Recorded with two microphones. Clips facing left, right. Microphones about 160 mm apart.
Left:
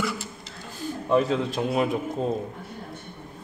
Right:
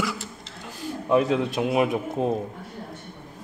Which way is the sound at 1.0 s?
5° right (ahead or behind).